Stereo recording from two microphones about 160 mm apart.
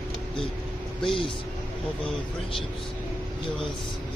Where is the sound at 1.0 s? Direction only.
35° left (ahead or behind).